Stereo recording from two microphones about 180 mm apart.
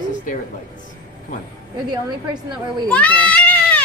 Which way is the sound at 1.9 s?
25° right (ahead or behind).